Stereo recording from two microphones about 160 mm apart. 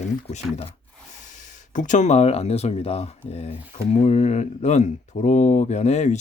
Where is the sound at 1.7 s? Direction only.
50° left (ahead or behind).